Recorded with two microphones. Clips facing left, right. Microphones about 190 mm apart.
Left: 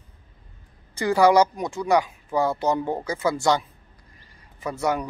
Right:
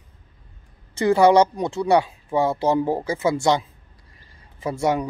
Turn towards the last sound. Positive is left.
turn(degrees=-25)  # may be behind; listen again after turning